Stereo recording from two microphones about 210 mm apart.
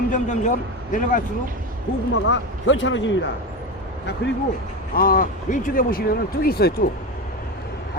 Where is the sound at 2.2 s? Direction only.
60° left (ahead or behind).